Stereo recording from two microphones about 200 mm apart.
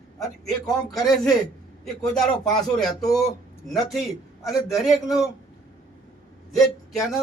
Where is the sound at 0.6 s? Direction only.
20° left (ahead or behind).